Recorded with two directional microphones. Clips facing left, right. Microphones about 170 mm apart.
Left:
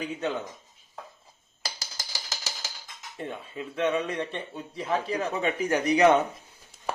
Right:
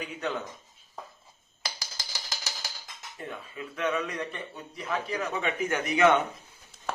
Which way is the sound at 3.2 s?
25° left (ahead or behind).